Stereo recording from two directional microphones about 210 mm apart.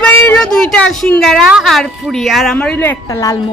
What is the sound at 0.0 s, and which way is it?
A woman's voice, 10° left (ahead or behind).